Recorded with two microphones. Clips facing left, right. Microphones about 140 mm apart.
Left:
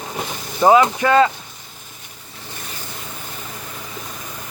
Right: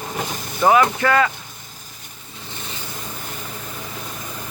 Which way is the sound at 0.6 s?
20° left (ahead or behind).